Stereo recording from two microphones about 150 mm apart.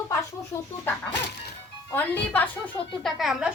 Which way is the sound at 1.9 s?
10° left (ahead or behind).